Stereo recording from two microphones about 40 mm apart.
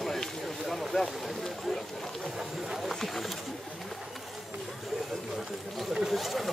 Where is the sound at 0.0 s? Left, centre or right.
Centre.